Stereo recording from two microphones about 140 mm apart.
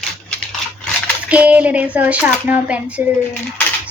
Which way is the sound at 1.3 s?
10° right (ahead or behind).